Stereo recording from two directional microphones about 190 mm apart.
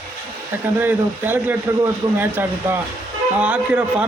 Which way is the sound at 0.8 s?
10° right (ahead or behind).